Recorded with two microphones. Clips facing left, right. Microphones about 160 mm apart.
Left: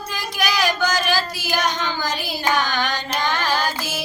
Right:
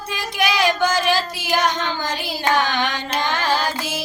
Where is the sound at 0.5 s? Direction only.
25° right (ahead or behind).